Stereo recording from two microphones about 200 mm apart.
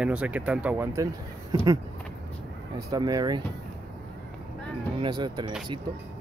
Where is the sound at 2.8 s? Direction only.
20° right (ahead or behind).